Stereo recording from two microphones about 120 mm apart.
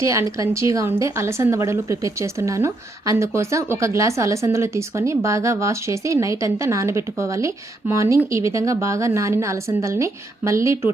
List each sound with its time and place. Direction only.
0.0 s a woman's voice: 25° right (ahead or behind)